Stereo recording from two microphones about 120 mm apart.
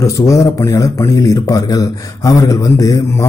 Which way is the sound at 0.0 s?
25° left (ahead or behind).